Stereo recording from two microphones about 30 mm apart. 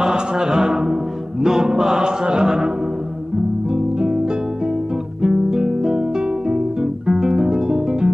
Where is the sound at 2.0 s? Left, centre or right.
Right.